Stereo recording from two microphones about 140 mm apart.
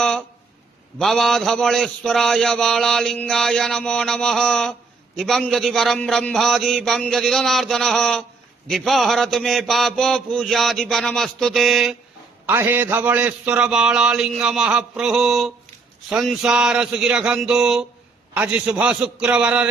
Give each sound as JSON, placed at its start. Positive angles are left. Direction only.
{"t": 0.0, "sound": "a sound", "side_deg": 5}
{"t": 0.9, "sound": "mantra", "side_deg": 0}
{"t": 12.5, "sound": "a man's voice", "side_deg": -15}
{"t": 16.0, "sound": "mantra", "side_deg": -5}
{"t": 18.3, "sound": "a man's voice", "side_deg": -10}